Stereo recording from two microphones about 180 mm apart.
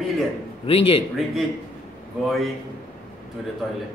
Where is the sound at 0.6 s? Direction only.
30° left (ahead or behind).